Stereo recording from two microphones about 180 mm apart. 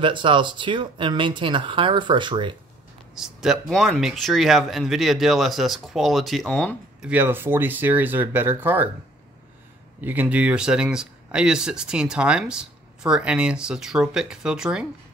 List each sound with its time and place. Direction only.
0.0 s speech: 30° right (ahead or behind)
3.2 s speech: centre (ahead or behind)
7.1 s speech: 10° right (ahead or behind)
9.9 s speech: 10° right (ahead or behind)